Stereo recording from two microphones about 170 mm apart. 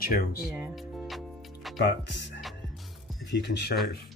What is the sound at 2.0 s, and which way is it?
Speech, 90° left.